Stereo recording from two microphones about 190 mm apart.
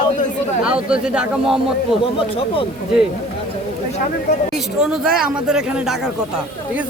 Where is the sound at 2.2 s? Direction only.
30° left (ahead or behind).